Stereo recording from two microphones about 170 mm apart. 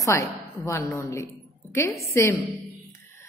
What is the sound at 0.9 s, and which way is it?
A woman's voice, 15° left (ahead or behind).